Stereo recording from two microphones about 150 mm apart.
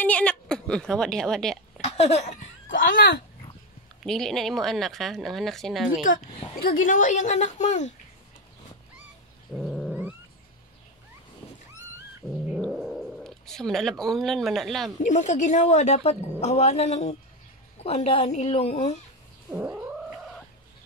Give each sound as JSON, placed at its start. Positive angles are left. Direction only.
{"t": 0.0, "sound": "a woman's voice", "side_deg": 10}
{"t": 1.8, "sound": "speech", "side_deg": 45}
{"t": 2.8, "sound": "speech", "side_deg": 70}
{"t": 4.0, "sound": "speech", "side_deg": 0}
{"t": 6.1, "sound": "speech", "side_deg": 60}
{"t": 9.6, "sound": "cat", "side_deg": 0}
{"t": 12.2, "sound": "cat", "side_deg": 0}
{"t": 15.0, "sound": "a woman's voice", "side_deg": 50}
{"t": 19.5, "sound": "cat", "side_deg": -10}